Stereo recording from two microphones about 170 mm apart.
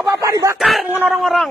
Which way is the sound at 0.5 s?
Centre (ahead or behind).